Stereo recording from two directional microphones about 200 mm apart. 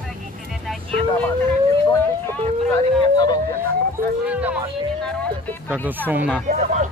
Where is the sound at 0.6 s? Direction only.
5° left (ahead or behind).